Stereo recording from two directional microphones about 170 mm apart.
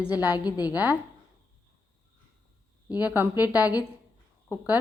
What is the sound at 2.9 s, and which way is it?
A woman's voice, 10° right (ahead or behind).